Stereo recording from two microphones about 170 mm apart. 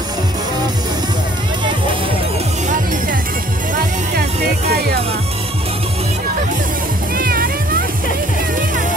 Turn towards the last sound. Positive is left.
turn(degrees=-60)  # may be behind; listen again after turning